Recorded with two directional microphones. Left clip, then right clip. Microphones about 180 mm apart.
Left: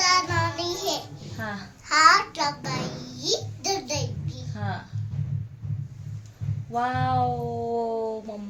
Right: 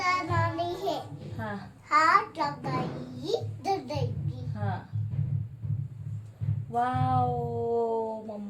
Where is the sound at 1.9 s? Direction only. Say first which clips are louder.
Left 4 dB; 10° left (ahead or behind).